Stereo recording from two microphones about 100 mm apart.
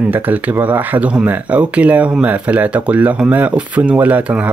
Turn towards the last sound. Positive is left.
turn(degrees=-15)  # may be behind; listen again after turning